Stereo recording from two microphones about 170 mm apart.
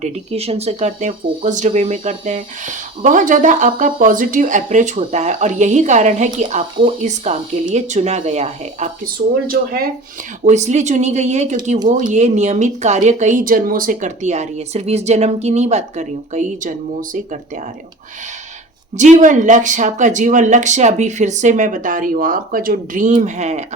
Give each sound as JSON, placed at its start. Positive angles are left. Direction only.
{"t": 0.0, "sound": "speech", "side_deg": -35}
{"t": 10.4, "sound": "speech", "side_deg": -45}
{"t": 18.9, "sound": "speech", "side_deg": -45}